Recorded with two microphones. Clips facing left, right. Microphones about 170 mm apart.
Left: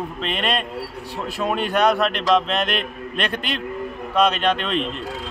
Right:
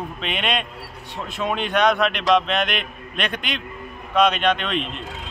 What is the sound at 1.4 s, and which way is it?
Speech, 5° left (ahead or behind).